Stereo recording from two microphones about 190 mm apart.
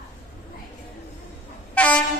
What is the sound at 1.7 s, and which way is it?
Train, 5° left (ahead or behind).